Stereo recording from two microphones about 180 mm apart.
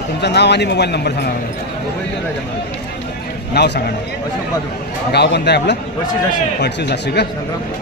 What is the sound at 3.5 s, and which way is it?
Speech, 70° left (ahead or behind).